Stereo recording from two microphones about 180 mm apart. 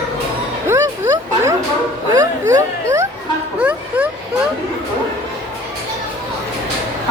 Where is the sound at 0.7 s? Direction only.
15° right (ahead or behind).